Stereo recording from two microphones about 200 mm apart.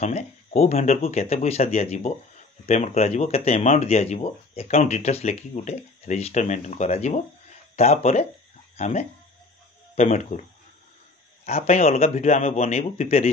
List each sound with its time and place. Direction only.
0.0 s speech: 30° left (ahead or behind)
11.4 s speech: 35° left (ahead or behind)